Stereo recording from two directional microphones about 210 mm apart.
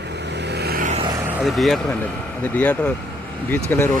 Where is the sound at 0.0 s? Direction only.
55° right (ahead or behind).